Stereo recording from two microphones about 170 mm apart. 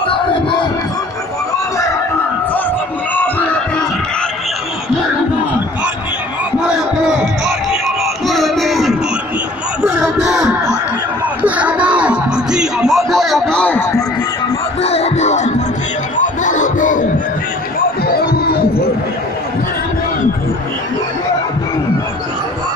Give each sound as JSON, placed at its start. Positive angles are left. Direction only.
{"t": 6.7, "sound": "music", "side_deg": -5}
{"t": 10.2, "sound": "a sound", "side_deg": -5}
{"t": 11.4, "sound": "music", "side_deg": -10}
{"t": 14.8, "sound": "music", "side_deg": 35}
{"t": 16.2, "sound": "crowd", "side_deg": 50}